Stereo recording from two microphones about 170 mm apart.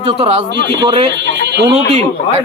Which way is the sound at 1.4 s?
90° right.